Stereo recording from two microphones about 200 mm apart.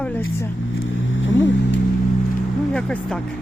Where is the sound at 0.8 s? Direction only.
70° left (ahead or behind).